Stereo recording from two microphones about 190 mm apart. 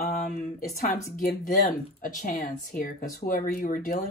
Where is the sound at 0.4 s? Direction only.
50° left (ahead or behind).